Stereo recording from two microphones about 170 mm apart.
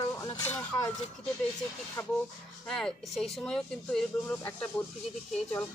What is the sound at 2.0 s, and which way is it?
Speech, 15° left (ahead or behind).